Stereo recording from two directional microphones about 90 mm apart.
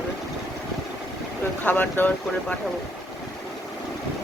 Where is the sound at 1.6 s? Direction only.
20° left (ahead or behind).